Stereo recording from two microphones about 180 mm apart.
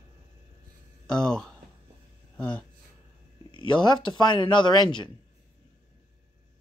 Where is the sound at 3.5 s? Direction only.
25° left (ahead or behind).